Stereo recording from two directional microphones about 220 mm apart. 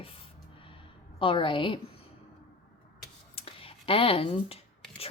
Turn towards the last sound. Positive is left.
turn(degrees=25)  # may be behind; listen again after turning